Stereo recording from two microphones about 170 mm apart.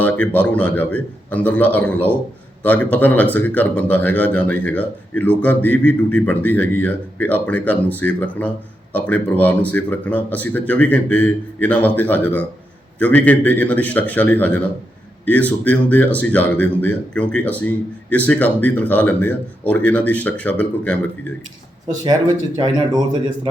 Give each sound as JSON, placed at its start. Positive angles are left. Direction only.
{"t": 0.0, "sound": "a man's voice", "side_deg": 10}
{"t": 22.5, "sound": "speech", "side_deg": -25}